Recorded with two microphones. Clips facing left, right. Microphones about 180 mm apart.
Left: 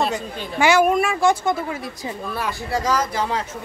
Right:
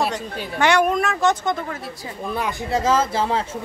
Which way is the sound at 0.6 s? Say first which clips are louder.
Left 2 dB; 5° left (ahead or behind).